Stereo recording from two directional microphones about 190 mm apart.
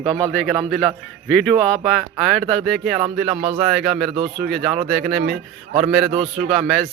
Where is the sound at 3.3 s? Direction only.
30° right (ahead or behind).